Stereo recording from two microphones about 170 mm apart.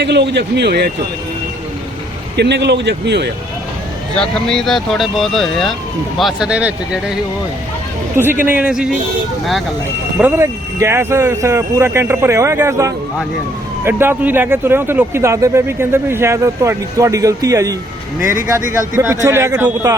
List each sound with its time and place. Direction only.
0.0 s a man's voice: 85° right
2.3 s a man's voice: 80° right
4.1 s speech: 5° left (ahead or behind)
8.1 s speech: 10° right (ahead or behind)
10.2 s speech: 15° right (ahead or behind)